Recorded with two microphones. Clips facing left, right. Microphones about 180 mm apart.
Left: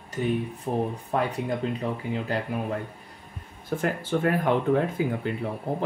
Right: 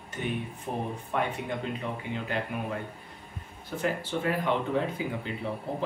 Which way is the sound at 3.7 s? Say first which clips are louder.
Left 4 dB; 50° left (ahead or behind).